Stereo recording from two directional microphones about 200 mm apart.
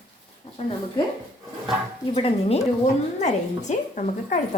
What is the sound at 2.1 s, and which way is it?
A woman's voice, 30° left (ahead or behind).